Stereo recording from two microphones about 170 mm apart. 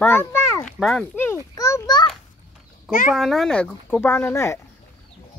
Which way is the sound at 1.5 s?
20° left (ahead or behind).